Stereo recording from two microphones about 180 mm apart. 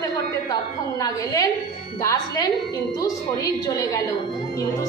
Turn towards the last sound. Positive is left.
turn(degrees=20)  # may be behind; listen again after turning